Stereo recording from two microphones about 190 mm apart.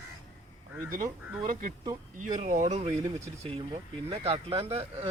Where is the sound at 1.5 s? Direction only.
45° right (ahead or behind); by 5.1 s 30° right (ahead or behind).